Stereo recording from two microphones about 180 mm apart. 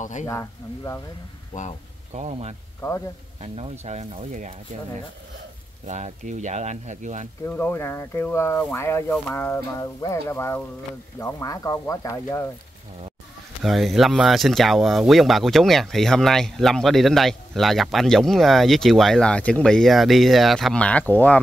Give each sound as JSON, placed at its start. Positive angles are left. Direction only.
{"t": 0.0, "sound": "speech", "side_deg": 45}
{"t": 0.3, "sound": "speech", "side_deg": 15}
{"t": 2.1, "sound": "speech", "side_deg": -35}
{"t": 5.9, "sound": "speech", "side_deg": -40}
{"t": 7.4, "sound": "speech", "side_deg": 10}
{"t": 13.6, "sound": "speech", "side_deg": 0}